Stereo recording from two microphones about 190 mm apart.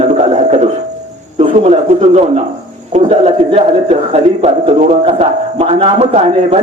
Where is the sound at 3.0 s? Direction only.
35° right (ahead or behind).